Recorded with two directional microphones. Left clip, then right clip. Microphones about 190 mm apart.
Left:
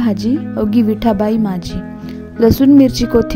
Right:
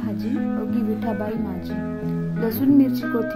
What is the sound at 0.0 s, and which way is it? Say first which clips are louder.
Speech: left 9 dB; 50° left (ahead or behind).